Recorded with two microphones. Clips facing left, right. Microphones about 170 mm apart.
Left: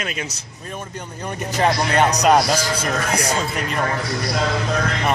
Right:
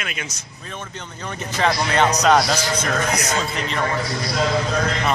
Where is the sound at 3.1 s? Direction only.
30° left (ahead or behind).